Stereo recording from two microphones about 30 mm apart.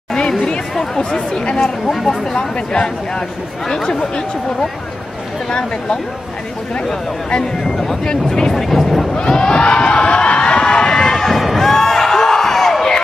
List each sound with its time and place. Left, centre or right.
0.4 s chatter: left
1.1 s speech: left
1.6 s speech: centre
2.7 s speech: left
7.6 s speech: centre
8.0 s speech: left
8.5 s vehicle: centre
9.1 s crowd: left
11.0 s run: centre
11.3 s a sound: centre